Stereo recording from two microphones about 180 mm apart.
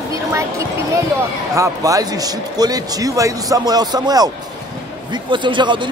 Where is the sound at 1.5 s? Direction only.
20° right (ahead or behind).